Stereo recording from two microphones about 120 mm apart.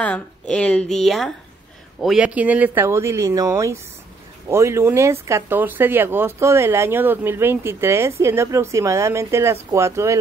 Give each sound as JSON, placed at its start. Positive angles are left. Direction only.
{"t": 0.0, "sound": "speech", "side_deg": 10}